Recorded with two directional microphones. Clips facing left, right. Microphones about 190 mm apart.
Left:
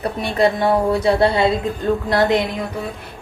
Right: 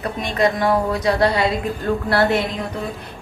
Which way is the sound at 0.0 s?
30° left (ahead or behind).